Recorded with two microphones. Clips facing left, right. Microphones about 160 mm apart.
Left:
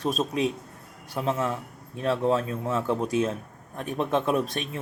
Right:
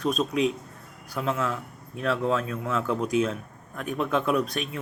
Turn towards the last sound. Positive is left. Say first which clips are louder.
# even
turn(degrees=25)  # may be behind; listen again after turning